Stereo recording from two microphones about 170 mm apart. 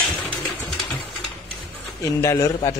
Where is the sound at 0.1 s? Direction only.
10° left (ahead or behind).